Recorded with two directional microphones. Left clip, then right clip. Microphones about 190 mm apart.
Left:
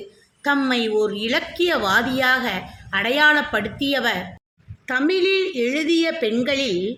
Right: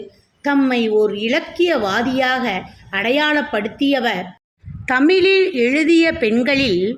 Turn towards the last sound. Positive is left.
turn(degrees=-15)  # may be behind; listen again after turning